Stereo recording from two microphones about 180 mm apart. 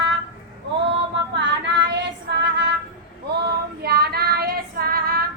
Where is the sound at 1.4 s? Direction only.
80° right.